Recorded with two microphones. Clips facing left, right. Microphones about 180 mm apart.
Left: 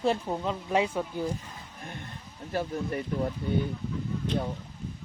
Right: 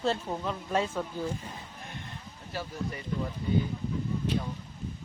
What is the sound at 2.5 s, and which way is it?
Speech, 55° left (ahead or behind).